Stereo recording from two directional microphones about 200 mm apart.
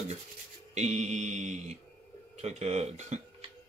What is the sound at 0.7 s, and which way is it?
Mantra, 35° right (ahead or behind).